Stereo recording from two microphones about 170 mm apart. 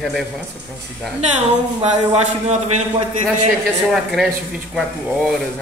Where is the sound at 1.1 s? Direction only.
40° right (ahead or behind).